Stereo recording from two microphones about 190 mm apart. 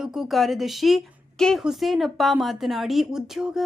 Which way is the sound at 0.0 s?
Centre (ahead or behind).